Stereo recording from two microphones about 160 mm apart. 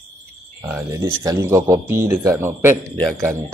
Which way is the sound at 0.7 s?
20° right (ahead or behind).